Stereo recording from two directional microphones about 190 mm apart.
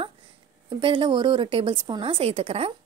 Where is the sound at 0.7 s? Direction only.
25° right (ahead or behind).